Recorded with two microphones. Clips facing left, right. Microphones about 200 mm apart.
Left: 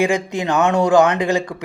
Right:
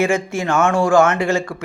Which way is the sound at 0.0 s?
15° left (ahead or behind).